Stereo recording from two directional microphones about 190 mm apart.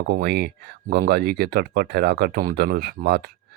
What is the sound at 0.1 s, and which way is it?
Speech, 60° right (ahead or behind).